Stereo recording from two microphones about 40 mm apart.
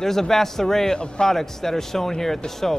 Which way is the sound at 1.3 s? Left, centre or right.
Centre.